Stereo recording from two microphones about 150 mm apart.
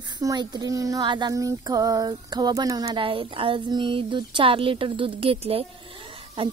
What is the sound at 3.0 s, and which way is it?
Speech, 35° right (ahead or behind).